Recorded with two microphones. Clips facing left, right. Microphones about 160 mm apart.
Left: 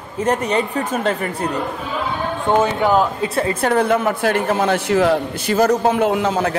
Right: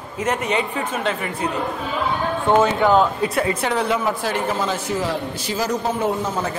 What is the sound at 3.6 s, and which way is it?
A man's voice, 55° left (ahead or behind).